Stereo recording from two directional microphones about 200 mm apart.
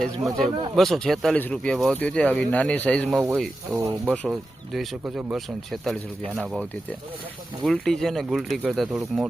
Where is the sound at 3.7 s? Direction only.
15° right (ahead or behind).